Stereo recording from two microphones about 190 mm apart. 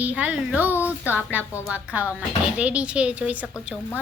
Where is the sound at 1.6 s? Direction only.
10° right (ahead or behind).